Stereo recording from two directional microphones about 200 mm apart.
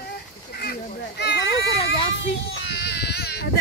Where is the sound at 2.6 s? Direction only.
60° left (ahead or behind).